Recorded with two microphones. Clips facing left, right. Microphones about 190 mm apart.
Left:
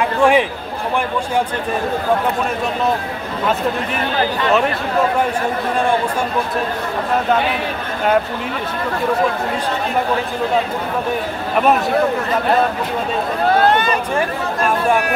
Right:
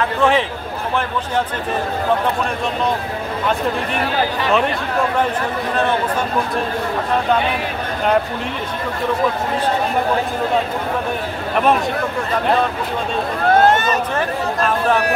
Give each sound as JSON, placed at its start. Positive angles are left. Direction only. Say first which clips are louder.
{"t": 0.0, "sound": "a man's voice", "louder": "left 2 dB", "side_deg": 15}
{"t": 13.7, "sound": "speech", "louder": "even", "side_deg": -45}